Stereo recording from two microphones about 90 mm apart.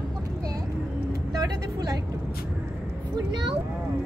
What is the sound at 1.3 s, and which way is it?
Vehicle, 45° right (ahead or behind).